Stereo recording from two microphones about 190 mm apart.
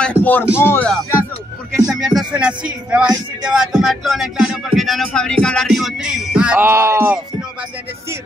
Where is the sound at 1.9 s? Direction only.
Centre (ahead or behind).